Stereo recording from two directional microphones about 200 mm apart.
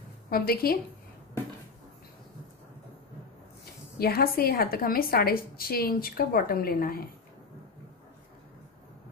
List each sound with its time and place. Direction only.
0.3 s a woman's voice: 50° left (ahead or behind)
4.0 s a woman's voice: 50° left (ahead or behind)